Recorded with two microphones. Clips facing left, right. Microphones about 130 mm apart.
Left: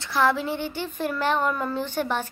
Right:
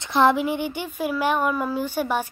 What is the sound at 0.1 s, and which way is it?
Speech, 20° right (ahead or behind).